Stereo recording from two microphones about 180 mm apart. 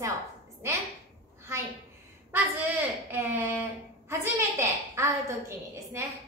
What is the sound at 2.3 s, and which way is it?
A woman's voice, 10° right (ahead or behind).